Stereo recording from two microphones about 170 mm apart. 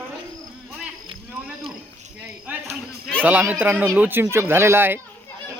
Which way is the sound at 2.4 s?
5° right (ahead or behind).